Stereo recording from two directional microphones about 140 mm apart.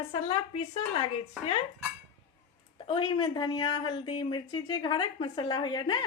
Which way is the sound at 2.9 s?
35° left (ahead or behind).